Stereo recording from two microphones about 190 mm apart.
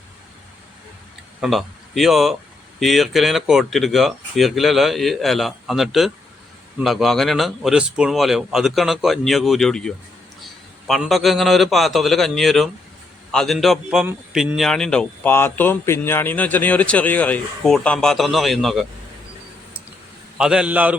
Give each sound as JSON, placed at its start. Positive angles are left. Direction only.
{"t": 1.4, "sound": "a man's voice", "side_deg": 0}
{"t": 20.4, "sound": "speech", "side_deg": -5}